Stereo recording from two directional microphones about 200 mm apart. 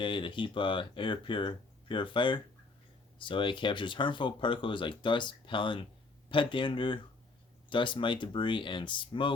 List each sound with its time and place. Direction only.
0.0 s speech: 25° left (ahead or behind)